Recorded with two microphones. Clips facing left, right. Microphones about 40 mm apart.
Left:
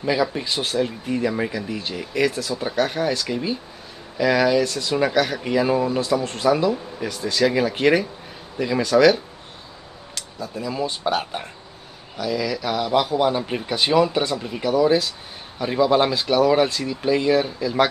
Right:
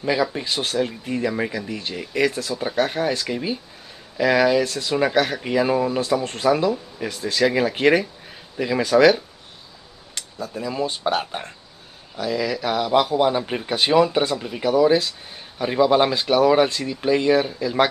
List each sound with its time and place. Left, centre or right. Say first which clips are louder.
0.0 s speech: even; centre
10.5 s speech: even; centre
12.8 s speech: right 1 dB; centre